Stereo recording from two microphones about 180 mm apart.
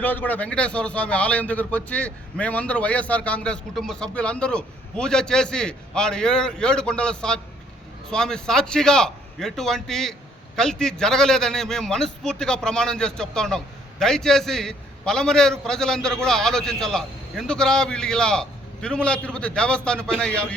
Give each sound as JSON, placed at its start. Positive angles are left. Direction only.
{"t": 0.0, "sound": "a man's voice", "side_deg": 10}